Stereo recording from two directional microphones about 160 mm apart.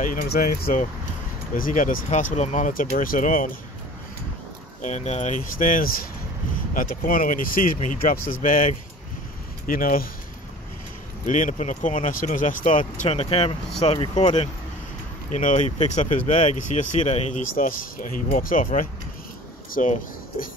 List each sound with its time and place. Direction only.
0.0 s speech: 55° left (ahead or behind)
4.8 s speech: 45° left (ahead or behind); by 10.0 s 60° left (ahead or behind)
11.2 s speech: 50° left (ahead or behind); by 14.3 s 30° left (ahead or behind)
15.3 s speech: 50° left (ahead or behind)
17.6 s speech: 60° left (ahead or behind)